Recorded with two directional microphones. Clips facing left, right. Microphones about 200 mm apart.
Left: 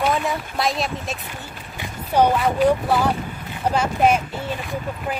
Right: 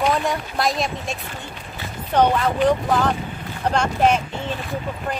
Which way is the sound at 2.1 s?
10° left (ahead or behind).